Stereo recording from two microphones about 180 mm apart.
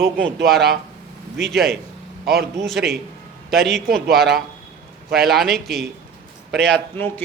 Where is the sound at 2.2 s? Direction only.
60° right (ahead or behind).